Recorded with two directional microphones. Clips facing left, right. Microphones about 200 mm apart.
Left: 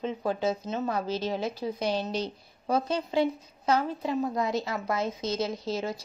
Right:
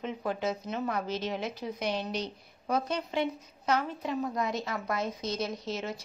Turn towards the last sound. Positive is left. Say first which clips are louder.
# left 4 dB
turn(degrees=30)  # may be behind; listen again after turning